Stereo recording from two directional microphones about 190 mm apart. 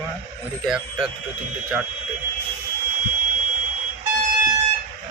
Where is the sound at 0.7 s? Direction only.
5° right (ahead or behind).